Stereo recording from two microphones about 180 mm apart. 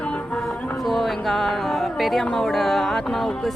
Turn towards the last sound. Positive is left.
turn(degrees=0)  # may be behind; listen again after turning